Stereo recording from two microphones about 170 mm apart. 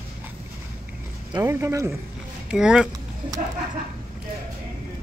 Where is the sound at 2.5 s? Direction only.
5° right (ahead or behind).